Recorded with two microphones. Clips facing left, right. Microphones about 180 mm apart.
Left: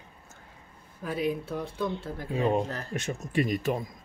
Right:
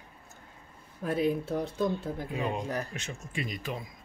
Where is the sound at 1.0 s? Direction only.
25° right (ahead or behind).